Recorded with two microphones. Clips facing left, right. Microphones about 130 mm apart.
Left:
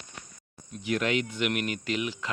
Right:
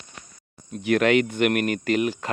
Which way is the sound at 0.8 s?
65° right (ahead or behind).